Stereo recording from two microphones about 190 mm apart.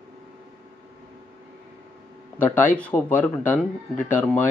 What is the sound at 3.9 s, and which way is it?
Speech, 40° left (ahead or behind).